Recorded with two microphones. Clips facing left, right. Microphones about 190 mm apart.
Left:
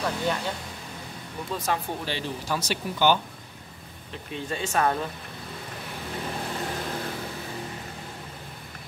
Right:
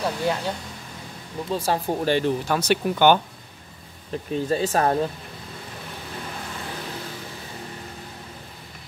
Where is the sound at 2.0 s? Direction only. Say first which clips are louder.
Right 11 dB; 55° right (ahead or behind).